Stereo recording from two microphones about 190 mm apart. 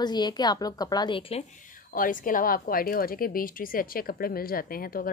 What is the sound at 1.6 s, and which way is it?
Speech, 45° left (ahead or behind).